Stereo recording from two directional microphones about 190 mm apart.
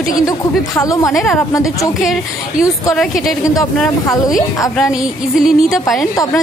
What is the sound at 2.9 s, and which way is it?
Speech, 5° left (ahead or behind).